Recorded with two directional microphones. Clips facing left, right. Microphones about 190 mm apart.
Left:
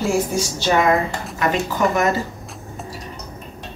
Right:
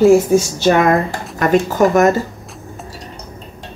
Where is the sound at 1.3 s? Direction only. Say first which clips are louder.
Right 8 dB; 45° right (ahead or behind).